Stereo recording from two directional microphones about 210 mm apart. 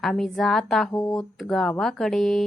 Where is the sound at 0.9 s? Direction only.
15° left (ahead or behind).